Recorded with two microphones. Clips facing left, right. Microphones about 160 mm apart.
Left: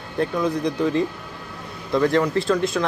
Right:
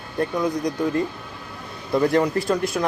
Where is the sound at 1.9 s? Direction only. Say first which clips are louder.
Even; 20° right (ahead or behind).